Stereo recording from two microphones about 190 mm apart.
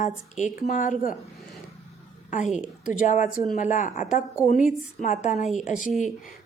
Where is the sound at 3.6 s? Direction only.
40° left (ahead or behind).